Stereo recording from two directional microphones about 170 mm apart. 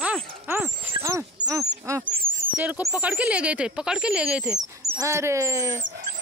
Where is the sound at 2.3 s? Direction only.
10° right (ahead or behind).